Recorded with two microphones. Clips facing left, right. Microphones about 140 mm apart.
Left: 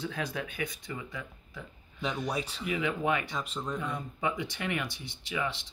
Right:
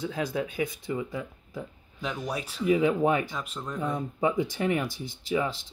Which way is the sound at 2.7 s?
40° right (ahead or behind).